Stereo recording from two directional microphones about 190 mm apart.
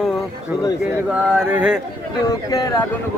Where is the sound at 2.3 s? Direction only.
15° left (ahead or behind).